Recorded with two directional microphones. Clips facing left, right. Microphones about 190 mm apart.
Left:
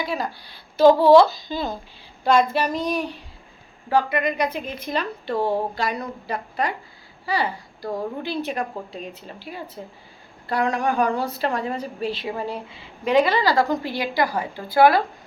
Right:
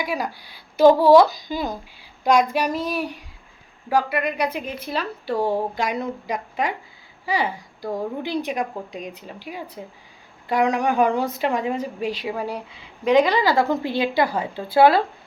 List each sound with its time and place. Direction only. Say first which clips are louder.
0.0 s a woman's voice: right 1 dB; 15° right (ahead or behind)